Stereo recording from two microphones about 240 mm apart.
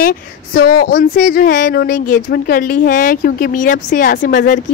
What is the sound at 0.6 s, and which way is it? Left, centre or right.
Speech, left.